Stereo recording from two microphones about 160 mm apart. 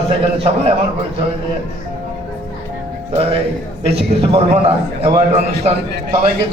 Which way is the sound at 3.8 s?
35° right (ahead or behind).